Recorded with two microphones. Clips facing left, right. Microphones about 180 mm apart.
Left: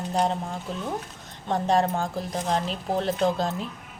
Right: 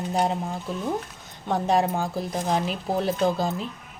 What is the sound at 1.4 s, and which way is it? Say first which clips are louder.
Speech: even; 10° right (ahead or behind).